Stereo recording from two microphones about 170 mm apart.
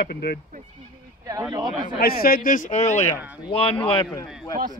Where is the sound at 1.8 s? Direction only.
60° left (ahead or behind); by 3.0 s 45° left (ahead or behind).